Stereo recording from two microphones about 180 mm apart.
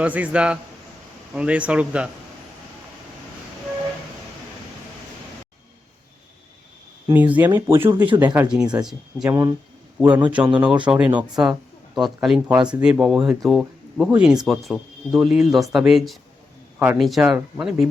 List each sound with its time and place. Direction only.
0.0 s speech: 10° right (ahead or behind)
7.1 s speech: 10° right (ahead or behind)
9.3 s speech: 20° right (ahead or behind)